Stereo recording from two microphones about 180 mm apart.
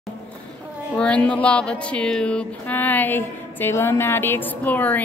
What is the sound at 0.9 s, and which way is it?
Speech, 5° left (ahead or behind).